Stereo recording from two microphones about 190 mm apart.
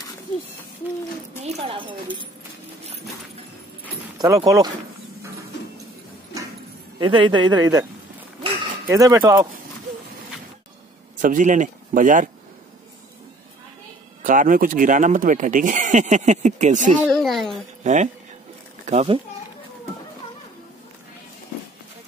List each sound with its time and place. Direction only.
1.4 s speech: 30° right (ahead or behind)
4.2 s a man's voice: 20° right (ahead or behind)
7.0 s a man's voice: 25° right (ahead or behind)
8.8 s a man's voice: 15° right (ahead or behind)
11.1 s speech: 45° right (ahead or behind)
14.2 s speech: 45° right (ahead or behind)
17.1 s a child's voice: centre (ahead or behind)
17.8 s speech: 40° right (ahead or behind)